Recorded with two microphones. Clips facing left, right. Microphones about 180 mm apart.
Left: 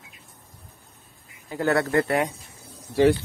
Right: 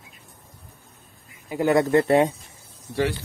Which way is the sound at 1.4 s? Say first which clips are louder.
Right 3 dB; 15° right (ahead or behind).